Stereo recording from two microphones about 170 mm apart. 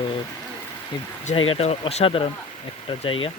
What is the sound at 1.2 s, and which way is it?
Speech, 35° left (ahead or behind).